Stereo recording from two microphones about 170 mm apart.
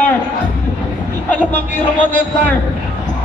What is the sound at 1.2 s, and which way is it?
Speech, 10° left (ahead or behind).